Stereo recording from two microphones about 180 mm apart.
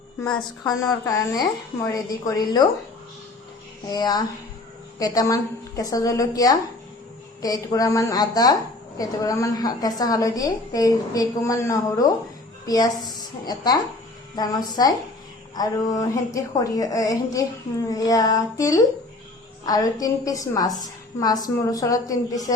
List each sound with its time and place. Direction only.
1.0 s a woman's voice: 20° left (ahead or behind)
3.9 s a woman's voice: 20° left (ahead or behind)